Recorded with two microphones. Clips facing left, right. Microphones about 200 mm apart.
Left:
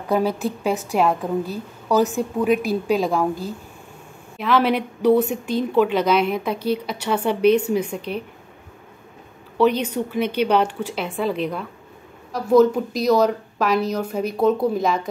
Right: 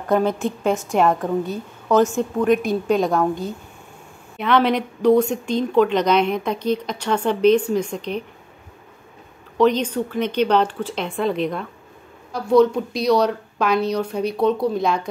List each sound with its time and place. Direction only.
0.0 s speech: 5° left (ahead or behind)
9.6 s speech: 10° left (ahead or behind)